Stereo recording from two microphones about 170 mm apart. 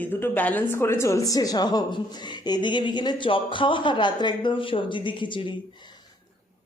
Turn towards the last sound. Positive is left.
turn(degrees=25)  # may be behind; listen again after turning